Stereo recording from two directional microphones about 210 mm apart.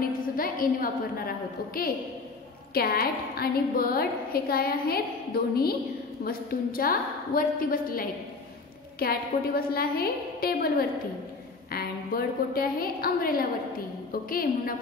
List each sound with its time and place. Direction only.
0.4 s a woman's voice: 40° left (ahead or behind)